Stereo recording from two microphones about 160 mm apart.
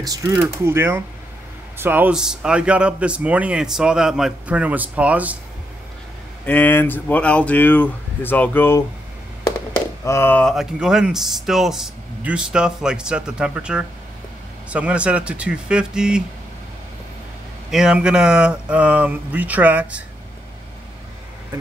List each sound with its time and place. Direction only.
0.0 s a man's voice: 20° right (ahead or behind)
6.4 s speech: 10° left (ahead or behind)
10.0 s speech: 15° left (ahead or behind)
10.4 s a man's voice: centre (ahead or behind)
17.6 s a man's voice: 5° right (ahead or behind)